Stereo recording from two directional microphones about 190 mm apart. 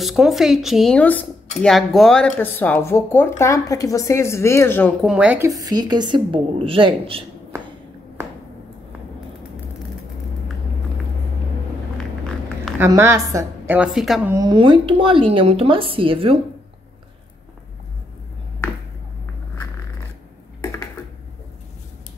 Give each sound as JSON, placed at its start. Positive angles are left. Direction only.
{"t": 0.0, "sound": "a woman's voice", "side_deg": 0}
{"t": 5.0, "sound": "a woman's voice", "side_deg": -5}
{"t": 12.7, "sound": "a woman's voice", "side_deg": -15}
{"t": 13.7, "sound": "a woman's voice", "side_deg": 0}
{"t": 14.3, "sound": "a woman's voice", "side_deg": -20}
{"t": 20.6, "sound": "a sound", "side_deg": 15}